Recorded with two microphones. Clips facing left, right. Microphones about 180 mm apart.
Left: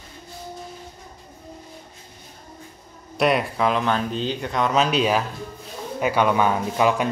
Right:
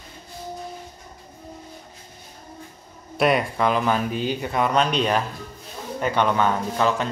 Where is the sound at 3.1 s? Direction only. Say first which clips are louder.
Even; centre (ahead or behind).